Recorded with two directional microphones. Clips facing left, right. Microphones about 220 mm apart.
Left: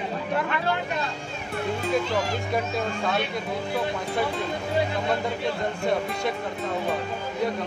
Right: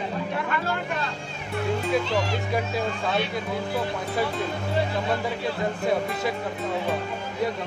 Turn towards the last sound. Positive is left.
turn(degrees=0)  # may be behind; listen again after turning